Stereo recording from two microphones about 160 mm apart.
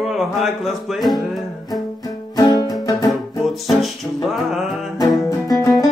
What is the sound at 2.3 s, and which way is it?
Music, 25° left (ahead or behind).